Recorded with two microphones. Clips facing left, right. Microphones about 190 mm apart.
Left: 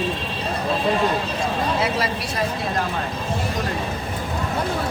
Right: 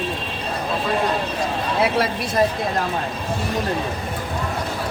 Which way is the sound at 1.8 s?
55° right (ahead or behind).